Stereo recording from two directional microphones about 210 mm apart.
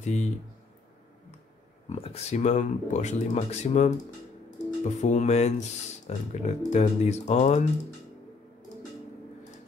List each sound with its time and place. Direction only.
0.0 s speech: 35° left (ahead or behind)
1.9 s speech: 30° left (ahead or behind)